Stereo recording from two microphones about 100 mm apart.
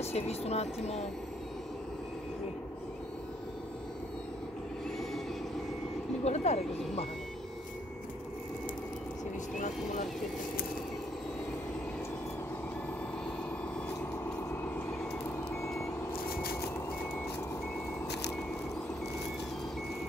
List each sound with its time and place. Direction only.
0.0 s speech: 90° left
6.2 s speech: 90° left